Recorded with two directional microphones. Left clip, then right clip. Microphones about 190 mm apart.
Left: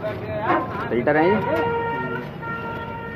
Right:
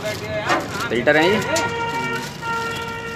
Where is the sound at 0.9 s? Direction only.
10° right (ahead or behind).